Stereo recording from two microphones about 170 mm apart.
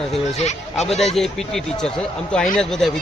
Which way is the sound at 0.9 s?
40° left (ahead or behind).